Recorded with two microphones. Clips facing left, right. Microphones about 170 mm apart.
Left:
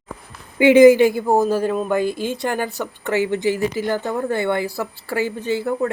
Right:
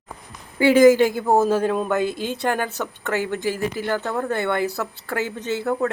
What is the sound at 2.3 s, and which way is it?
Speech, 15° left (ahead or behind).